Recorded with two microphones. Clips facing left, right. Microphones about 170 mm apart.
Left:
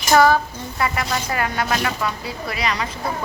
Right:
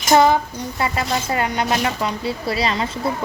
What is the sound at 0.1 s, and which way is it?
Speech, 20° right (ahead or behind).